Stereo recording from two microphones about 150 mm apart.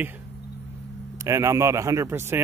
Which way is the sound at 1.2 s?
20° right (ahead or behind).